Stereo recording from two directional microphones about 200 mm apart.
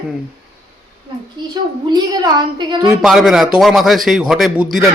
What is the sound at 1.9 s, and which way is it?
Speech, 20° right (ahead or behind).